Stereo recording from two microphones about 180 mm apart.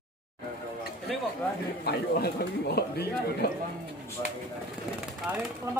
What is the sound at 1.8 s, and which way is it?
Speech, 65° left (ahead or behind).